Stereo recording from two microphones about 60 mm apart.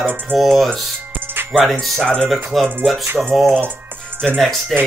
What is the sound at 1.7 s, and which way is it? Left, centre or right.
Speech, centre.